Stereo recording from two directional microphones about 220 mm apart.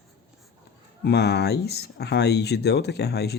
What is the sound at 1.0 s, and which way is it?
Speech, 50° left (ahead or behind).